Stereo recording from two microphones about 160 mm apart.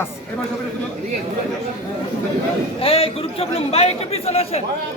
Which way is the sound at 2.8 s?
35° left (ahead or behind).